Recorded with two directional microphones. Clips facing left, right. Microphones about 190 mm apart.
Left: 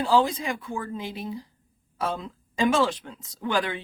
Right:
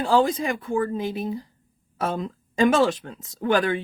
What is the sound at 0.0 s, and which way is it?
Speech, 50° right (ahead or behind).